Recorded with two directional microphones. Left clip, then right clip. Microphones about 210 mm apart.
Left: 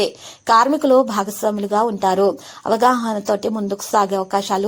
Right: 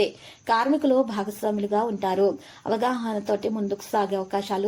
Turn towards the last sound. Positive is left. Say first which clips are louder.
# left 7 dB
turn(degrees=25)  # may be behind; listen again after turning